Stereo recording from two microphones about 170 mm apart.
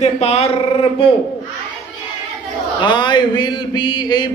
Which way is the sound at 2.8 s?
25° left (ahead or behind).